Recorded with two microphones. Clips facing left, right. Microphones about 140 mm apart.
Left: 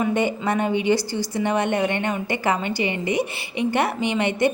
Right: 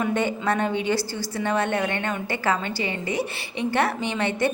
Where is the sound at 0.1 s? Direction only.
15° left (ahead or behind).